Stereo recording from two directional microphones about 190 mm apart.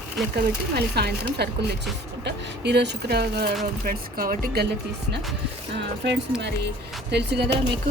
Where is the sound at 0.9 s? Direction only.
60° right (ahead or behind).